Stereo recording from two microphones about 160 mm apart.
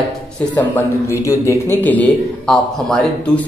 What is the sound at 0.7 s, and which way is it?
A man's voice, 20° left (ahead or behind).